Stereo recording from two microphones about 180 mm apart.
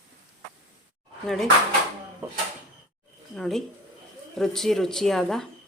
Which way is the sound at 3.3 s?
5° left (ahead or behind).